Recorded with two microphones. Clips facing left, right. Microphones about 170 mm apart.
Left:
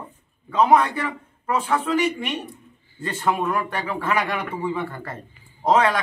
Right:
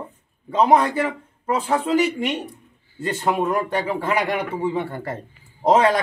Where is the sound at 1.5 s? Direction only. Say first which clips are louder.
Right 1 dB; 35° right (ahead or behind).